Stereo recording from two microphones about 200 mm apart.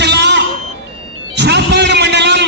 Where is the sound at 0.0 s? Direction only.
60° right (ahead or behind).